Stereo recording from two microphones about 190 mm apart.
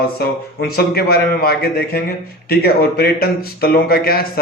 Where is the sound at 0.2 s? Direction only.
50° left (ahead or behind).